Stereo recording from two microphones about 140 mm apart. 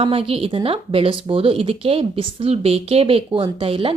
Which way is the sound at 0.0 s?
40° right (ahead or behind).